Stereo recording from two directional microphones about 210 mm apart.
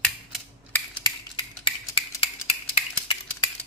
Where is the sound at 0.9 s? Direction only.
20° left (ahead or behind).